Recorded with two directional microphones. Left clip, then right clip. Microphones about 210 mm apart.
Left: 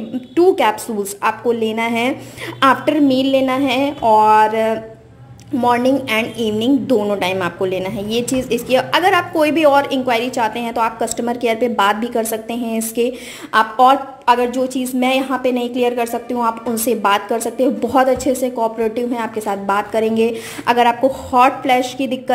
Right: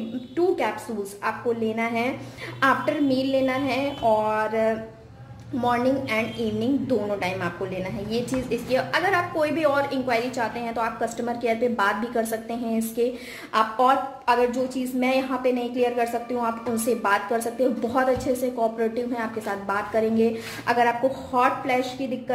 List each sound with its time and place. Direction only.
1.2 s a woman's voice: 40° left (ahead or behind)
4.2 s a woman's voice: 40° left (ahead or behind)